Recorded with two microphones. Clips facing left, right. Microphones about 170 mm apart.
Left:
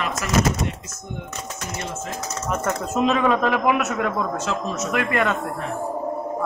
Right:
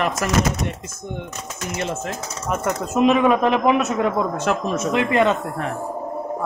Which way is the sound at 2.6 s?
15° right (ahead or behind).